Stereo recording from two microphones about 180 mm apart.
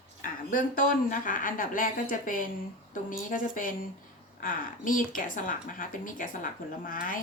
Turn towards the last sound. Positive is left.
turn(degrees=50)  # may be behind; listen again after turning